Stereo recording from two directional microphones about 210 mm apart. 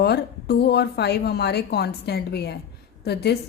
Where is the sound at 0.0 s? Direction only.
50° left (ahead or behind).